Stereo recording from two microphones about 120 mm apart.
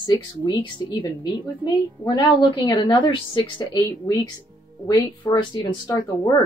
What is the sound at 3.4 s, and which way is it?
Speech, 30° left (ahead or behind).